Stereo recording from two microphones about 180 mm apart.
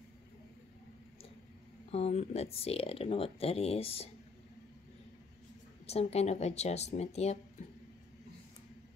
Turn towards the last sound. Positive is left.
turn(degrees=35)  # may be behind; listen again after turning